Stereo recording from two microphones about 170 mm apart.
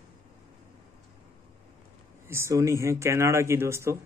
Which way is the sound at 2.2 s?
15° right (ahead or behind).